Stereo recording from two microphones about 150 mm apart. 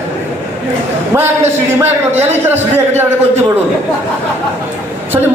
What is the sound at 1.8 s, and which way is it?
Speech, 15° right (ahead or behind).